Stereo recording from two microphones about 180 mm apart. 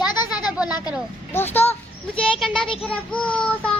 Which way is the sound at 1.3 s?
10° left (ahead or behind).